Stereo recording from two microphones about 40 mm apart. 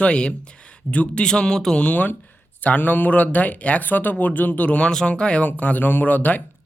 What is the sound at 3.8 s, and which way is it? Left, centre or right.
Speech, left.